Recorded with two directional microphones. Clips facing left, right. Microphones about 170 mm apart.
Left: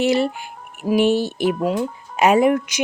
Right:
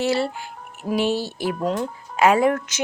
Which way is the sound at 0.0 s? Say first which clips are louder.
Left 4 dB; 15° left (ahead or behind).